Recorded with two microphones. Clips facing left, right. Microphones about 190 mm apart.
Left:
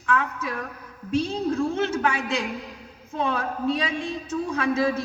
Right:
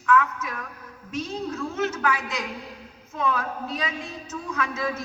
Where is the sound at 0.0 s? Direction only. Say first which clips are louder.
Right 3 dB; 30° left (ahead or behind).